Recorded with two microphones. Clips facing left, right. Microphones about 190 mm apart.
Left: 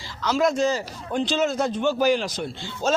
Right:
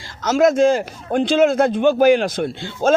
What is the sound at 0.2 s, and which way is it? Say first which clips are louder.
A man's voice: right 7 dB; 45° right (ahead or behind).